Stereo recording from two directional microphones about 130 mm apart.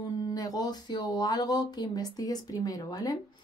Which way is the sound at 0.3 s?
30° left (ahead or behind).